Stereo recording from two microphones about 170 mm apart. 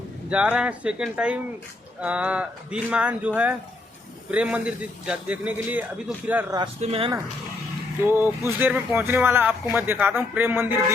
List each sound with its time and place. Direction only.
0.3 s speech: 5° right (ahead or behind)
6.8 s speech: 35° right (ahead or behind)
8.0 s speech: 10° right (ahead or behind)